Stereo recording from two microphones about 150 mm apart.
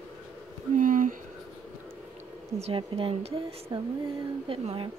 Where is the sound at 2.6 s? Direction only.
40° right (ahead or behind).